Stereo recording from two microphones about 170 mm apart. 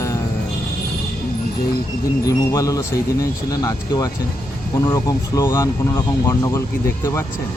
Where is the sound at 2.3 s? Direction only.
20° left (ahead or behind).